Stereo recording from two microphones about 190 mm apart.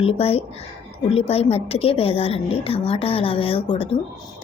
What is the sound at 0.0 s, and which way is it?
A woman's voice, 30° left (ahead or behind).